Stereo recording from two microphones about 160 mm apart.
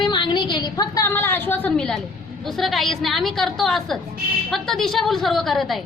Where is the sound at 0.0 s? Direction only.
30° left (ahead or behind).